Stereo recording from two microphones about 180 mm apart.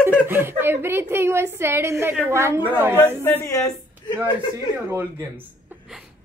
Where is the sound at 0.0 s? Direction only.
10° right (ahead or behind).